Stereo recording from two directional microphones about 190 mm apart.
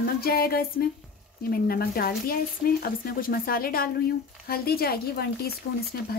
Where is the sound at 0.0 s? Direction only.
50° left (ahead or behind).